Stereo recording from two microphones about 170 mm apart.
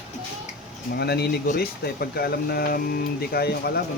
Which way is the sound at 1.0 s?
70° left (ahead or behind).